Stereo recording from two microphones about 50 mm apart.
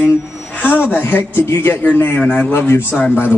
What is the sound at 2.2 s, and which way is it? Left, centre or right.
Speech, left.